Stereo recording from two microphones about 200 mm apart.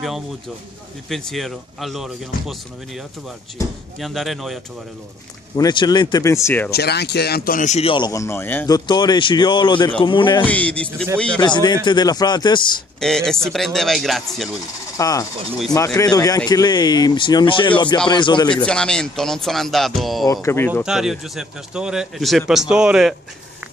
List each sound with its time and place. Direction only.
1.0 s speech: centre (ahead or behind)
4.0 s speech: centre (ahead or behind)
5.6 s speech: 20° left (ahead or behind)
6.7 s speech: 55° left (ahead or behind); by 10.4 s 25° left (ahead or behind)
10.4 s speech: 5° left (ahead or behind)
11.3 s speech: 20° left (ahead or behind)
13.0 s speech: 5° left (ahead or behind)
15.0 s speech: 15° left (ahead or behind)
18.7 s speech: 5° left (ahead or behind)
20.4 s speech: 10° left (ahead or behind)
20.8 s speech: centre (ahead or behind)